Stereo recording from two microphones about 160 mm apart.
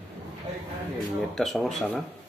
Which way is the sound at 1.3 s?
Centre (ahead or behind).